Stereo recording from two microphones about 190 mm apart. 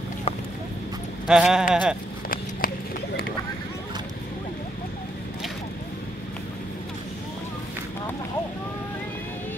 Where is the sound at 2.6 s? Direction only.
50° left (ahead or behind).